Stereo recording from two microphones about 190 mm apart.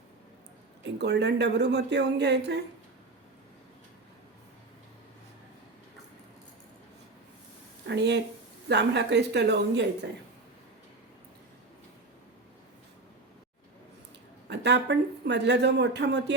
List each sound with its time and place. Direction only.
0.9 s speech: 65° right (ahead or behind)
7.9 s speech: 65° right (ahead or behind)
14.5 s speech: 65° right (ahead or behind)